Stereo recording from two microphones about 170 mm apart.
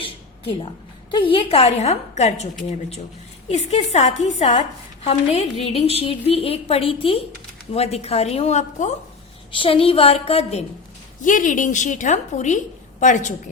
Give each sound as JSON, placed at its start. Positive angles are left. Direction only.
{"t": 0.0, "sound": "a sound", "side_deg": 30}
{"t": 1.1, "sound": "a woman's voice", "side_deg": 30}
{"t": 3.5, "sound": "a woman's voice", "side_deg": 40}
{"t": 9.5, "sound": "a woman's voice", "side_deg": 30}
{"t": 11.2, "sound": "a woman's voice", "side_deg": 50}